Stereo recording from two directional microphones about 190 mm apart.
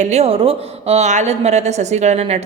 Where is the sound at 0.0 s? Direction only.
35° right (ahead or behind).